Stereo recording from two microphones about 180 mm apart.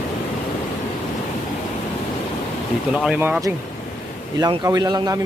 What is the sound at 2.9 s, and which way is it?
Speech, 5° right (ahead or behind).